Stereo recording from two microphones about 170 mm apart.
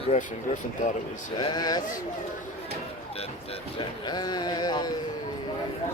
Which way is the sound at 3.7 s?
25° left (ahead or behind).